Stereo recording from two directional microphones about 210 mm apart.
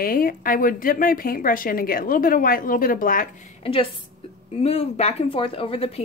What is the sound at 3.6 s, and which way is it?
A woman's voice, 25° left (ahead or behind).